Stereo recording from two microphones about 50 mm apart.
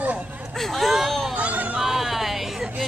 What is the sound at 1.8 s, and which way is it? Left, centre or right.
Speech, centre.